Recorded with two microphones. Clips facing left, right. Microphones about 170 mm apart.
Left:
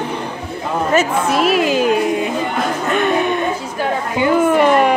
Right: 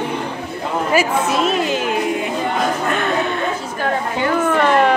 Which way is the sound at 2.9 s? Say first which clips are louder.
Left 4 dB; 20° left (ahead or behind).